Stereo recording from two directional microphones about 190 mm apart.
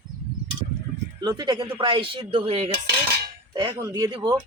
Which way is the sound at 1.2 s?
20° right (ahead or behind).